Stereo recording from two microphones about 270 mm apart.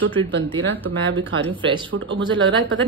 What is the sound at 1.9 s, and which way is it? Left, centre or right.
Speech, right.